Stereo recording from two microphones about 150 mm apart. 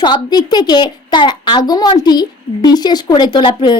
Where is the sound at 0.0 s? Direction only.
30° left (ahead or behind).